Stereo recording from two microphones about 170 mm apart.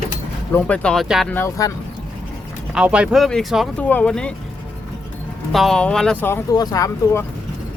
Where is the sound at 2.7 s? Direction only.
5° right (ahead or behind).